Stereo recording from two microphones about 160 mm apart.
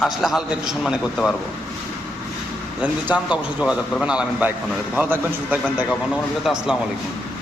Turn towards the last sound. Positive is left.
turn(degrees=0)  # may be behind; listen again after turning